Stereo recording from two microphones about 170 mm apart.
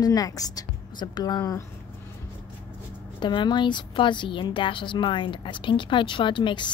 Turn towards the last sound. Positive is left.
turn(degrees=30)  # may be behind; listen again after turning